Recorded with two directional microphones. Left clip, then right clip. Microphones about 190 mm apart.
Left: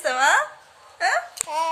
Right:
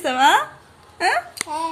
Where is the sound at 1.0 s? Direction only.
20° right (ahead or behind).